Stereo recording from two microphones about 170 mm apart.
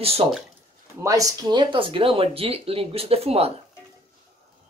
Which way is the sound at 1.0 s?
20° right (ahead or behind).